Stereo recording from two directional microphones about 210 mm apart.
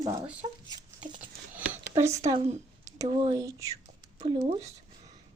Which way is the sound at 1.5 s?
10° right (ahead or behind).